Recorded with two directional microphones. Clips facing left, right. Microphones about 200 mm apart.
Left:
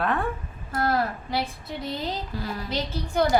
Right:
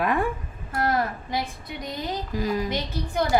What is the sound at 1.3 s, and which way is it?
A woman's voice, 15° right (ahead or behind).